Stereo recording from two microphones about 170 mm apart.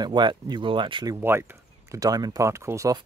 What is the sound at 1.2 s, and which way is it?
Speech, 15° right (ahead or behind).